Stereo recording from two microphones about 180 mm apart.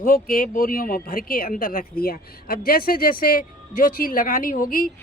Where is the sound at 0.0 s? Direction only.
50° left (ahead or behind).